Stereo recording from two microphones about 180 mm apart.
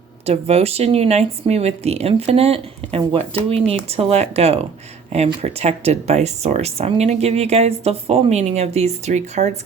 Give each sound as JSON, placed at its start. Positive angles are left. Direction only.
{"t": 0.3, "sound": "speech", "side_deg": -35}